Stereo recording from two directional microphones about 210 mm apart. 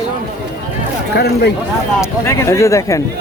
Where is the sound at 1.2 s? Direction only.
50° left (ahead or behind).